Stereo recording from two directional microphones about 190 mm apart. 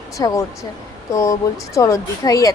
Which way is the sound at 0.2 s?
20° left (ahead or behind).